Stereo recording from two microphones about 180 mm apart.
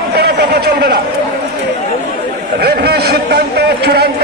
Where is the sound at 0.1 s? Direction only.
65° right (ahead or behind).